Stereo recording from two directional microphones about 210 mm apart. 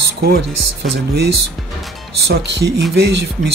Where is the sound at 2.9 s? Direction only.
50° right (ahead or behind).